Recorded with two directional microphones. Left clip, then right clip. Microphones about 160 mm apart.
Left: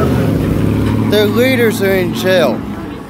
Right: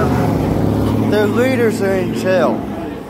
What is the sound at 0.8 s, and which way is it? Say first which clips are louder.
Speech: left 4 dB; 25° left (ahead or behind).